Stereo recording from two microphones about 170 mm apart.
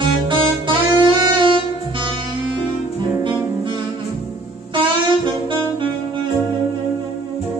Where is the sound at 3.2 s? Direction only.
30° right (ahead or behind).